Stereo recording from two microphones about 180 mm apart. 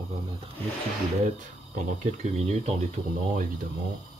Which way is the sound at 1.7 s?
40° right (ahead or behind).